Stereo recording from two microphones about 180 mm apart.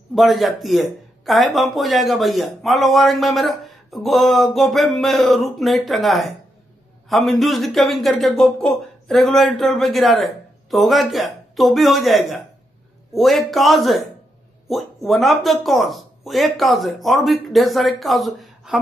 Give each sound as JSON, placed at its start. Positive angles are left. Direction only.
{"t": 0.1, "sound": "speech", "side_deg": 0}